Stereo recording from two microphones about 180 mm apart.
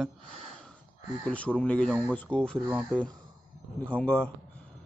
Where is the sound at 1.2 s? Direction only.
5° left (ahead or behind).